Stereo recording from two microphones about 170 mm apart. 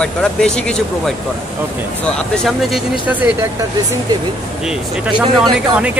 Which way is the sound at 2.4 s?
Centre (ahead or behind).